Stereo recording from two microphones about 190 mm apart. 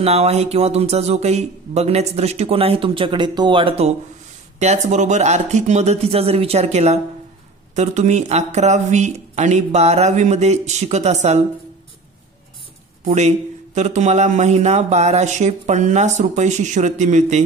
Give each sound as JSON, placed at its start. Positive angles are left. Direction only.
{"t": 0.0, "sound": "speech", "side_deg": -35}
{"t": 13.0, "sound": "speech", "side_deg": -35}